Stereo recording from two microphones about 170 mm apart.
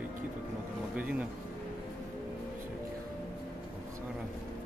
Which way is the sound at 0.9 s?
10° right (ahead or behind).